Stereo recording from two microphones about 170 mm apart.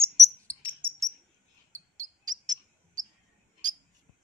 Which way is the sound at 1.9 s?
45° right (ahead or behind).